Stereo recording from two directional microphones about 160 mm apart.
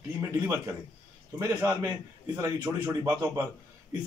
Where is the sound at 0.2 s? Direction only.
15° right (ahead or behind).